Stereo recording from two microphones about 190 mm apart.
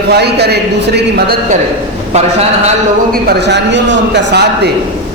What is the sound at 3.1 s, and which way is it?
Speech, 60° right (ahead or behind).